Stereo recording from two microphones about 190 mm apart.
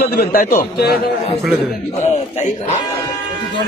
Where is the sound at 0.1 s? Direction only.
55° left (ahead or behind).